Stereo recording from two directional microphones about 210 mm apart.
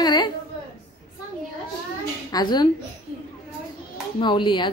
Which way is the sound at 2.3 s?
20° left (ahead or behind).